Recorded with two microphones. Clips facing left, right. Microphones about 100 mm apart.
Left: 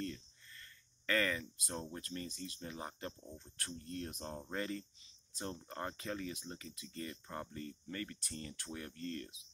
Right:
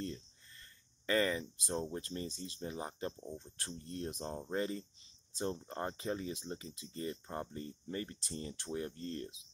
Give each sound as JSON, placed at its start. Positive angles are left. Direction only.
{"t": 0.0, "sound": "speech", "side_deg": -25}